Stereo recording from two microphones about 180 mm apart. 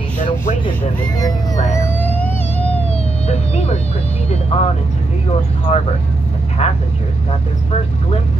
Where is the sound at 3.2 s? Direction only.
35° left (ahead or behind).